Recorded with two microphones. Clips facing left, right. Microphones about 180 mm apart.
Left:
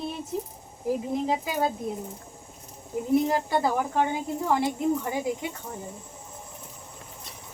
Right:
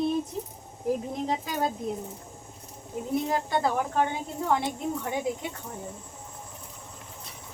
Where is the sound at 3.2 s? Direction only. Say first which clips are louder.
Left 2 dB; 5° left (ahead or behind).